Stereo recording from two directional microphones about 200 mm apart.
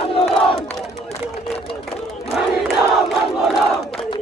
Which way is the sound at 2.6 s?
Centre (ahead or behind).